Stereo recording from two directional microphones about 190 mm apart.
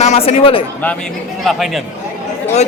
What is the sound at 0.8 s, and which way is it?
A man's voice, 5° left (ahead or behind).